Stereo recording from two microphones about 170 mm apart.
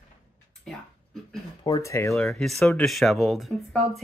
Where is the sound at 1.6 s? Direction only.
20° left (ahead or behind).